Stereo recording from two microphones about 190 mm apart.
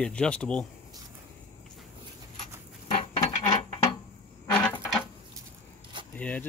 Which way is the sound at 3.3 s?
20° left (ahead or behind).